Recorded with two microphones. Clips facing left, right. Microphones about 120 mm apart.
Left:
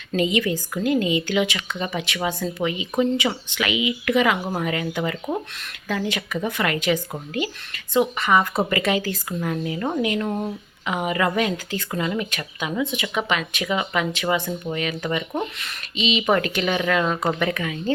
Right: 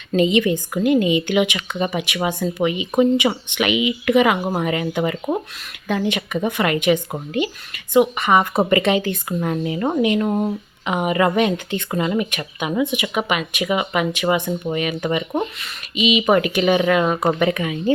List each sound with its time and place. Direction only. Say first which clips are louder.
0.2 s speech: right 5 dB; 20° right (ahead or behind)
15.6 s speech: right 5 dB; 10° right (ahead or behind)